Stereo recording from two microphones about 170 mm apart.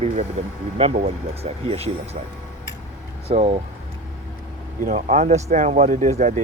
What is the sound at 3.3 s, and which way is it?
Speech, 40° right (ahead or behind).